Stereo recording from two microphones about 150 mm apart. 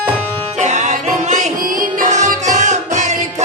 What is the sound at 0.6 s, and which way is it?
Music, 55° right (ahead or behind).